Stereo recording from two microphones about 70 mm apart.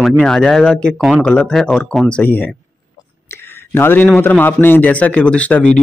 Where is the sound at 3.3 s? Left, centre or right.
Left.